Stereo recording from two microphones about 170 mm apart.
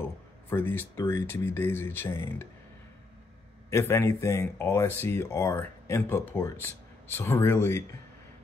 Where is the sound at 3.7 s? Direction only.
15° left (ahead or behind).